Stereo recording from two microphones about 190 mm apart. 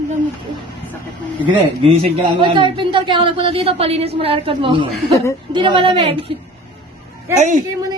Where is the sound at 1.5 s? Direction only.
30° right (ahead or behind).